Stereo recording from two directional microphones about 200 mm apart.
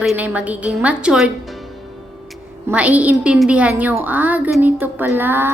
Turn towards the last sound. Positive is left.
turn(degrees=-10)  # may be behind; listen again after turning